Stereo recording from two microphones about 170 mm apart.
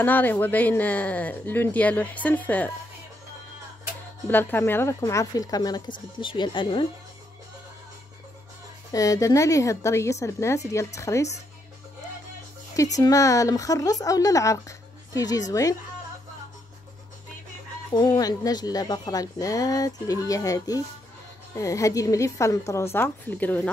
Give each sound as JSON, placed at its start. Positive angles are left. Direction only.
{"t": 0.0, "sound": "speech", "side_deg": 10}
{"t": 4.3, "sound": "speech", "side_deg": 10}
{"t": 8.9, "sound": "speech", "side_deg": 20}
{"t": 12.7, "sound": "speech", "side_deg": 20}
{"t": 17.9, "sound": "speech", "side_deg": 25}